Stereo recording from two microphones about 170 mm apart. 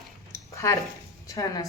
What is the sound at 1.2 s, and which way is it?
Speech, 20° left (ahead or behind).